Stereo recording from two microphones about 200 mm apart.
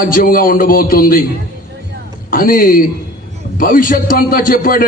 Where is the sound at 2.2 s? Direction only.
45° left (ahead or behind).